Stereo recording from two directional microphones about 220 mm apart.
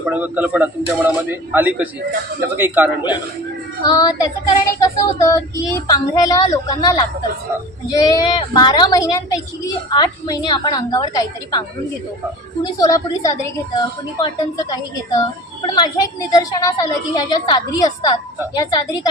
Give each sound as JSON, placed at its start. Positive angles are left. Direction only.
{"t": 0.0, "sound": "a man's voice", "side_deg": -5}
{"t": 3.8, "sound": "a woman's voice", "side_deg": 15}
{"t": 12.6, "sound": "a woman's voice", "side_deg": 15}